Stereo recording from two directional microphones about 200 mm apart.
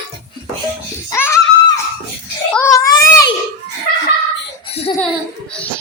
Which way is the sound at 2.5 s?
15° left (ahead or behind).